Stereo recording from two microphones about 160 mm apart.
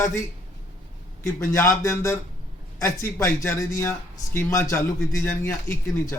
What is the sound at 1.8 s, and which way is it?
Speech, 15° left (ahead or behind).